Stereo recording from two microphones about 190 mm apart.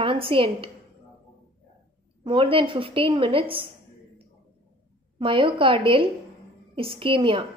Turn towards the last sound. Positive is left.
turn(degrees=-25)  # may be behind; listen again after turning